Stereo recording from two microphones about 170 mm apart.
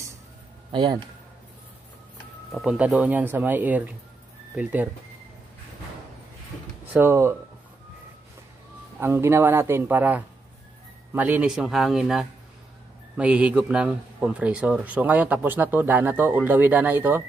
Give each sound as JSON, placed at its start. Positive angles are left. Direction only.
{"t": 0.7, "sound": "speech", "side_deg": -30}
{"t": 2.5, "sound": "a man's voice", "side_deg": -5}
{"t": 6.9, "sound": "a man's voice", "side_deg": -10}
{"t": 9.0, "sound": "a man's voice", "side_deg": -15}